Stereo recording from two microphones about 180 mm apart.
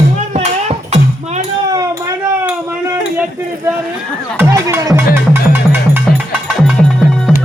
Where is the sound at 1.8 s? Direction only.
15° right (ahead or behind).